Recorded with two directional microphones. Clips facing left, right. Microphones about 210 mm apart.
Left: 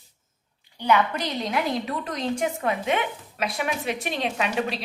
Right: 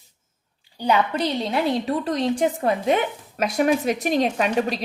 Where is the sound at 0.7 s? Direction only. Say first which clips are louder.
Right 2 dB; 30° right (ahead or behind).